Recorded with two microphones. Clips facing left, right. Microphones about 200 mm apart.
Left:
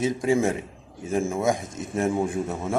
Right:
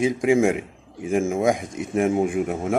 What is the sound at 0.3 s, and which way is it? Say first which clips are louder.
A man's voice: right 4 dB; 15° right (ahead or behind).